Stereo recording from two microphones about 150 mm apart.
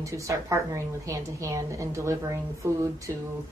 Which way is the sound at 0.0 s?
20° right (ahead or behind).